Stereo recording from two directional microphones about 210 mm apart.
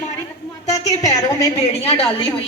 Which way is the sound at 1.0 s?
15° left (ahead or behind).